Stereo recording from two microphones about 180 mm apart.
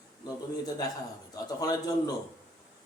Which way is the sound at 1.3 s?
20° left (ahead or behind).